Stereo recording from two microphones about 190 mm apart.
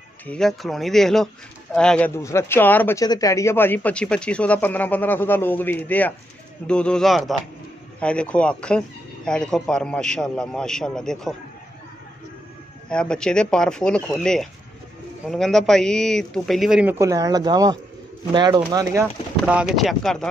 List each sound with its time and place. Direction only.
0.3 s speech: centre (ahead or behind)
12.8 s speech: 5° left (ahead or behind)
17.0 s speech: 20° right (ahead or behind)
19.4 s speech: centre (ahead or behind)